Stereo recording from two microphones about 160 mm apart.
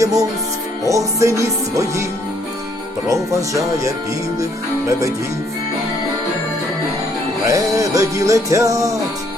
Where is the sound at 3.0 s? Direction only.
20° right (ahead or behind).